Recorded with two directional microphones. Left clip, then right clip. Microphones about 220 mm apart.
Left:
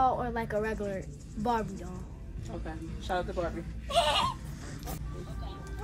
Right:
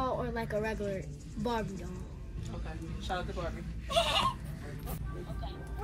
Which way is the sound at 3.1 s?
35° left (ahead or behind).